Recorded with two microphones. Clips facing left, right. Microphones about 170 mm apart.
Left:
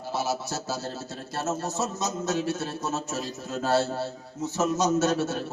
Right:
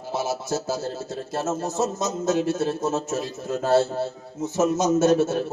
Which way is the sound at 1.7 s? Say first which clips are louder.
Right 4 dB; 50° right (ahead or behind).